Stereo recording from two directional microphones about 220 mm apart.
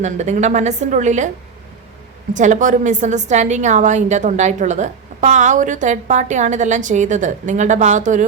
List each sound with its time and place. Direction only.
0.0 s a woman's voice: 30° right (ahead or behind)
2.3 s a woman's voice: 35° right (ahead or behind)